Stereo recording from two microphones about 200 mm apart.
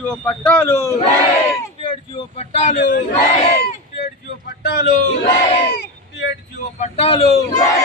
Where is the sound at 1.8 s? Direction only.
30° left (ahead or behind).